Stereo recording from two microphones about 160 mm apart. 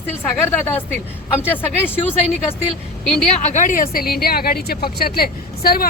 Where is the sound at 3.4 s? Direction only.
50° left (ahead or behind).